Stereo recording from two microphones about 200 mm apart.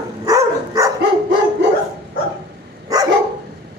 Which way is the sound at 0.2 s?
15° right (ahead or behind).